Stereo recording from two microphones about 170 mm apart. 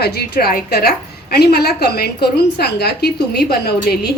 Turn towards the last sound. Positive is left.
turn(degrees=70)  # may be behind; listen again after turning